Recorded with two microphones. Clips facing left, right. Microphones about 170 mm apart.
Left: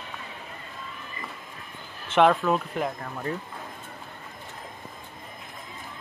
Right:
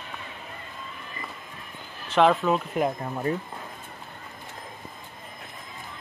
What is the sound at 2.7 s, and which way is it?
Speech, 20° right (ahead or behind).